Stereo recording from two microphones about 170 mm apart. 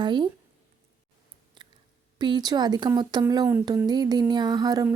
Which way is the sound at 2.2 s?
25° right (ahead or behind).